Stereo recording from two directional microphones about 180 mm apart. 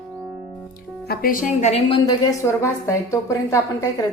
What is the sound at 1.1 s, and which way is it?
Speech, 50° left (ahead or behind).